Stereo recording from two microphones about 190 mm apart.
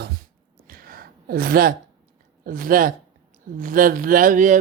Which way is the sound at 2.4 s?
50° right (ahead or behind).